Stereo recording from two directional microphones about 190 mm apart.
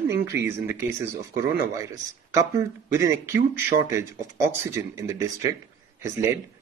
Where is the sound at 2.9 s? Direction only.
15° right (ahead or behind).